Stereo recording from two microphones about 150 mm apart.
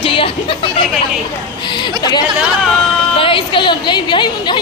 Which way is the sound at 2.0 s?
25° left (ahead or behind).